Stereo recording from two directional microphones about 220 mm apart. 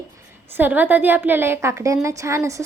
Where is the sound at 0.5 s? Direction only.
10° right (ahead or behind).